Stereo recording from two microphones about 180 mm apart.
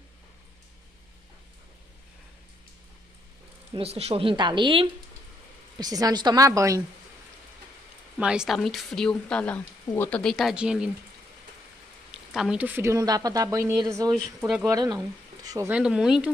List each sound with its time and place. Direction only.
3.7 s a woman's voice: 35° right (ahead or behind); by 6.8 s 15° right (ahead or behind)
8.2 s a woman's voice: 5° right (ahead or behind)
12.1 s a woman's voice: 5° right (ahead or behind); by 15.7 s 20° right (ahead or behind)
15.7 s a woman's voice: 5° right (ahead or behind)